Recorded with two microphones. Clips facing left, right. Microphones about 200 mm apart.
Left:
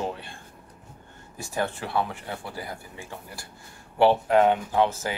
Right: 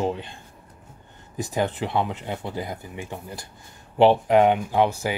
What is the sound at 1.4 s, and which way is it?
A man's voice, 20° right (ahead or behind).